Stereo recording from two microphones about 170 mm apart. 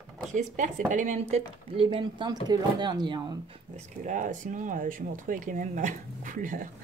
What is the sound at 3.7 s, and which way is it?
Speech, 50° right (ahead or behind).